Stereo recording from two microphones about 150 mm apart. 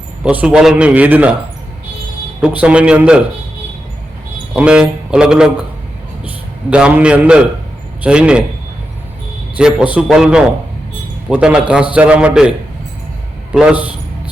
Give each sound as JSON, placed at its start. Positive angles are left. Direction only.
{"t": 0.2, "sound": "a man's voice", "side_deg": -10}
{"t": 2.4, "sound": "a man's voice", "side_deg": -10}
{"t": 4.5, "sound": "a man's voice", "side_deg": -5}
{"t": 9.6, "sound": "a man's voice", "side_deg": -5}